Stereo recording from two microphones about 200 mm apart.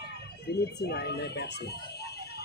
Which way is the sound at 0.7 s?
55° left (ahead or behind).